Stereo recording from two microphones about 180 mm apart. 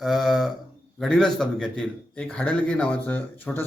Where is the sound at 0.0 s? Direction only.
Centre (ahead or behind).